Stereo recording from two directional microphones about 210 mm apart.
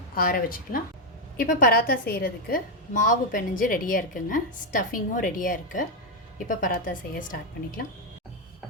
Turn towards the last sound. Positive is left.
turn(degrees=40)  # may be behind; listen again after turning